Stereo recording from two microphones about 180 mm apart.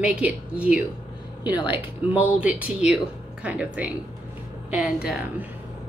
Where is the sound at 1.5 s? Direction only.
25° left (ahead or behind).